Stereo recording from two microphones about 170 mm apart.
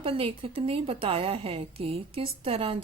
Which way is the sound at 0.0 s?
35° right (ahead or behind).